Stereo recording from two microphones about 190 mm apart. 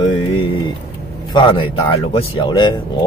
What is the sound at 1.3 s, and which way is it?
Speech, 25° left (ahead or behind).